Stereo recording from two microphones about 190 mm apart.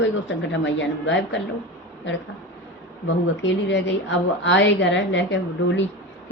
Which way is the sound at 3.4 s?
70° left (ahead or behind).